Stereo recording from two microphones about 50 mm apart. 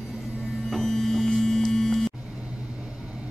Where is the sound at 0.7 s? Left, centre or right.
Centre.